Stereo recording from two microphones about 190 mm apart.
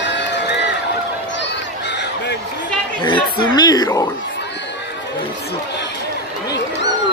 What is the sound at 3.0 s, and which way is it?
Speech, 25° left (ahead or behind).